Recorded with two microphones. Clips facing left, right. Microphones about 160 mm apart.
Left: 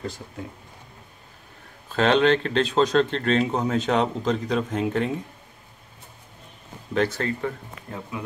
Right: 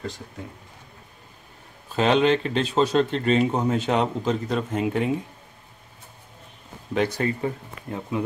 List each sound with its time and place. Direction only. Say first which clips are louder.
1.9 s speech: even; 5° right (ahead or behind)
6.9 s speech: even; 15° right (ahead or behind)